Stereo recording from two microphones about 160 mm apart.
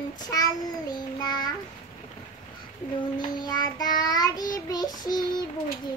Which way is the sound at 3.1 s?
25° left (ahead or behind).